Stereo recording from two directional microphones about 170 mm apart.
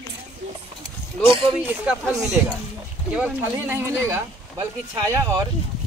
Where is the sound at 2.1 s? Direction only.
Centre (ahead or behind); by 5.4 s 20° right (ahead or behind).